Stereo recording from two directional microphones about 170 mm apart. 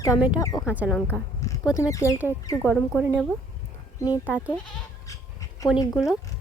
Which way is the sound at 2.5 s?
5° right (ahead or behind).